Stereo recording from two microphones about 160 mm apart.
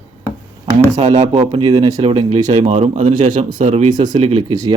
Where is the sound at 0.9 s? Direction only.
45° right (ahead or behind).